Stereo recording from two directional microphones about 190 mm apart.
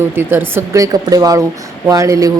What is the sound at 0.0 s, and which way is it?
A woman's voice, 10° right (ahead or behind).